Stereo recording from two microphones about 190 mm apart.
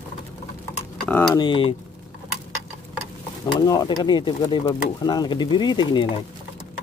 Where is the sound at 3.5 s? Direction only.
20° left (ahead or behind).